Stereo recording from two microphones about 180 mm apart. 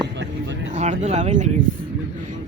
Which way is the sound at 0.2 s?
80° right.